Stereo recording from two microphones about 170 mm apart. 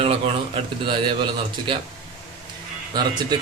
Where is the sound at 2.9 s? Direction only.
25° right (ahead or behind).